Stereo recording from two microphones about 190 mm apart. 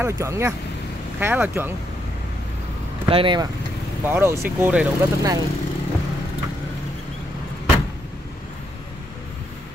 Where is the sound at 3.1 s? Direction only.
25° right (ahead or behind).